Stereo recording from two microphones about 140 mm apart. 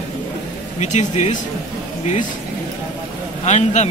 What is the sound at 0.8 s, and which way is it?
Speech, 55° left (ahead or behind).